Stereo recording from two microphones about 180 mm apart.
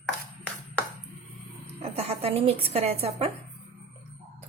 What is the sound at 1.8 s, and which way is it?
Speech, 35° right (ahead or behind).